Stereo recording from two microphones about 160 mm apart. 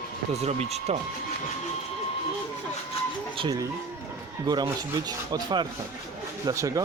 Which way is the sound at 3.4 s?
25° right (ahead or behind).